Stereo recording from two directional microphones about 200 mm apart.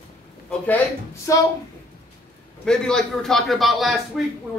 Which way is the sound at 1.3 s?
15° left (ahead or behind).